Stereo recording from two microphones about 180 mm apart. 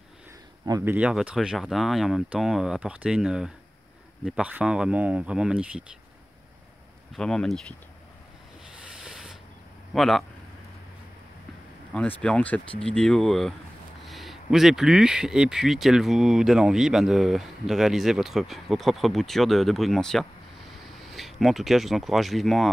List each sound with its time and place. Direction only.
0.7 s speech: 20° right (ahead or behind)
0.9 s speech: 5° right (ahead or behind)
7.2 s speech: 5° left (ahead or behind)
9.0 s a sound: 5° right (ahead or behind)
9.9 s speech: centre (ahead or behind)
12.2 s speech: 5° left (ahead or behind)